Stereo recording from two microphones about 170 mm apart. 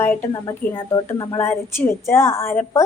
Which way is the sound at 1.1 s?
25° left (ahead or behind).